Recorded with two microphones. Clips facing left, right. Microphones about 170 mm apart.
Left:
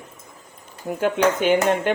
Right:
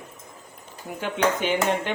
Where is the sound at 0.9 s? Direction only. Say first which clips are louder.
Left 5 dB; 45° left (ahead or behind).